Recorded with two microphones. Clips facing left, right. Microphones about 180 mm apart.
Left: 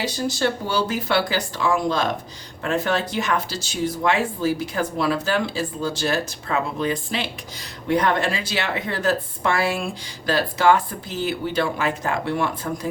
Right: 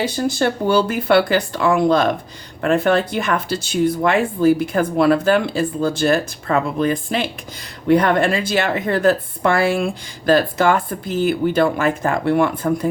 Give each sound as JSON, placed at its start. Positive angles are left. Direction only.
{"t": 0.0, "sound": "speech", "side_deg": -55}